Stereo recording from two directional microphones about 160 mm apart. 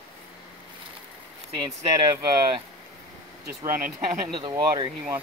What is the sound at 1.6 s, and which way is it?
Speech, 25° right (ahead or behind).